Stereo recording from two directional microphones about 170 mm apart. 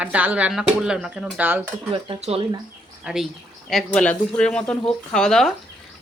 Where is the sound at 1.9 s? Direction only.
35° right (ahead or behind).